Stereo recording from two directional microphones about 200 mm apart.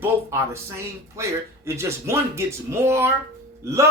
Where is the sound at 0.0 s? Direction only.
15° right (ahead or behind).